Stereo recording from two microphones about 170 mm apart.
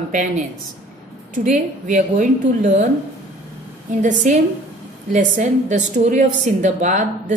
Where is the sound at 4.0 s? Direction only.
50° right (ahead or behind).